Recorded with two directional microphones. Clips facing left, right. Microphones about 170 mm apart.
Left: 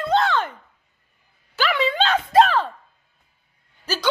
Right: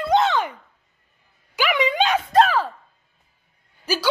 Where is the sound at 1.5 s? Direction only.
15° right (ahead or behind).